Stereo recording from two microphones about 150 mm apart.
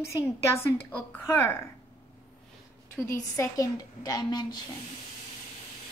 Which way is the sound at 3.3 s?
25° left (ahead or behind).